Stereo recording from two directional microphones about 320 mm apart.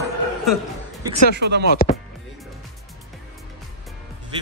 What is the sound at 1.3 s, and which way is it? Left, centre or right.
Speech, right.